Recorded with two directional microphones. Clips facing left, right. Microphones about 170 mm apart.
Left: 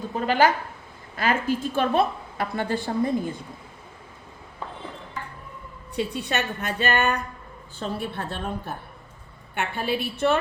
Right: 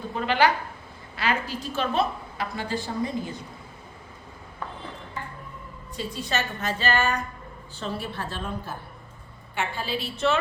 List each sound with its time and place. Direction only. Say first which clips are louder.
0.1 s a woman's voice: left 2 dB; 40° left (ahead or behind)
6.0 s a woman's voice: left 3 dB; 65° left (ahead or behind)